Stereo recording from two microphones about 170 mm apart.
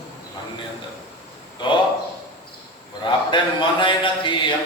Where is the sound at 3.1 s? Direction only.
30° left (ahead or behind).